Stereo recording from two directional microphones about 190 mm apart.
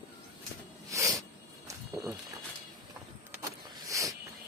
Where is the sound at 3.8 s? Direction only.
15° right (ahead or behind).